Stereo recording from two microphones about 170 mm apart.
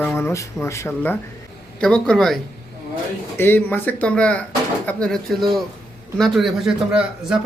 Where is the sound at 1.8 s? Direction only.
5° left (ahead or behind).